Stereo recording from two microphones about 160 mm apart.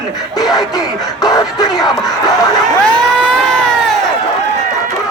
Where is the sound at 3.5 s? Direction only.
5° left (ahead or behind).